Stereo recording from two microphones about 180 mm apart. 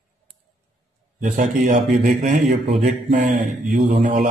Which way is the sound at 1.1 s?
45° right (ahead or behind).